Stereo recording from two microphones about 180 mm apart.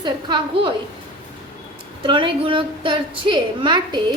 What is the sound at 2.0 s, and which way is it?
A woman's voice, 30° right (ahead or behind).